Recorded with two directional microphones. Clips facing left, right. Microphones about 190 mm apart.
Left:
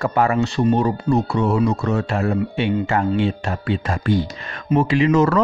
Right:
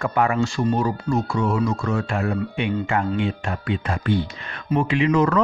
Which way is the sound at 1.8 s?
40° left (ahead or behind).